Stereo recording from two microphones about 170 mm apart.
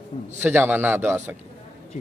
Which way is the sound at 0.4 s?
10° right (ahead or behind).